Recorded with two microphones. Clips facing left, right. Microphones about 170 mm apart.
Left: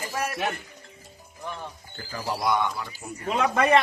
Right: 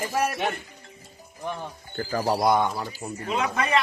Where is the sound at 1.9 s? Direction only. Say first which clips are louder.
Right 8 dB; 50° right (ahead or behind).